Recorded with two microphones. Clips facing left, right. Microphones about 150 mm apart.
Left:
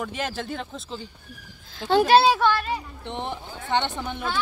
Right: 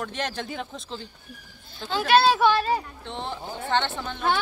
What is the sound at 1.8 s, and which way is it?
Speech, 70° left (ahead or behind).